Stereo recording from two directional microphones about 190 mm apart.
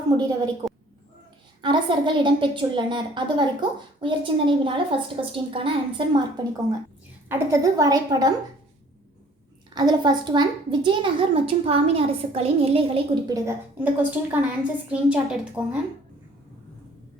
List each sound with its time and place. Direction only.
0.1 s a woman's voice: 20° right (ahead or behind)
1.6 s a woman's voice: 25° right (ahead or behind)
9.7 s a woman's voice: 20° right (ahead or behind)
13.3 s a woman's voice: 15° right (ahead or behind)